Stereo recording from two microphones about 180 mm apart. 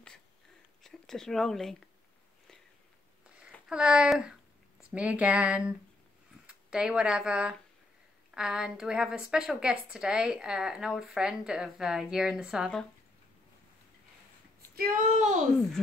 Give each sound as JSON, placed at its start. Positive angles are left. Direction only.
{"t": 0.8, "sound": "speech", "side_deg": 0}
{"t": 3.3, "sound": "a sound", "side_deg": -5}
{"t": 4.9, "sound": "speech", "side_deg": -5}
{"t": 14.8, "sound": "speech", "side_deg": -50}